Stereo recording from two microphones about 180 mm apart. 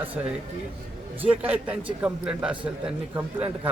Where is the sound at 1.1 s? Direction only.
10° right (ahead or behind).